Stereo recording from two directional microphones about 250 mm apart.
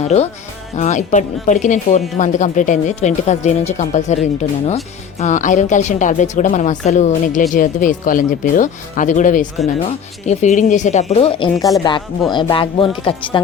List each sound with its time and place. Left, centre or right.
0.1 s speech: left